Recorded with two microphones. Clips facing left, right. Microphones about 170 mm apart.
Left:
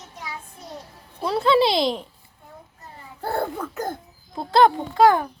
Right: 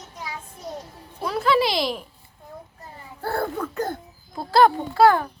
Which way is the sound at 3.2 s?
20° left (ahead or behind).